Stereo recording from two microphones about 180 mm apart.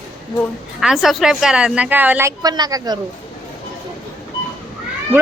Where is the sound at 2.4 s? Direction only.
20° right (ahead or behind).